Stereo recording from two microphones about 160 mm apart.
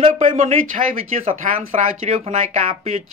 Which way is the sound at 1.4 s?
55° right (ahead or behind).